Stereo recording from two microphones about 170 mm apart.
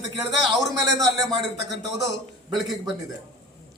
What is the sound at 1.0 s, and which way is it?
Speech, 20° right (ahead or behind).